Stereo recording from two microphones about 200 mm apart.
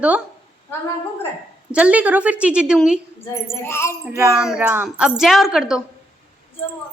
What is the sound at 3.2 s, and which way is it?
Speech, 10° left (ahead or behind).